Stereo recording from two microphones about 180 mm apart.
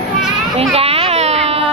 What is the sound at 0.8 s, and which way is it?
Baby cry, 35° right (ahead or behind).